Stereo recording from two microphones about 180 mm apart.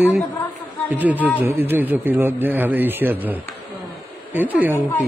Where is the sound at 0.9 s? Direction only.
10° right (ahead or behind).